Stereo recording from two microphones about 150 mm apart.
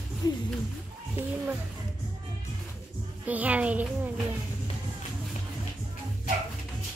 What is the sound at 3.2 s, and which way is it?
Speech, 10° right (ahead or behind).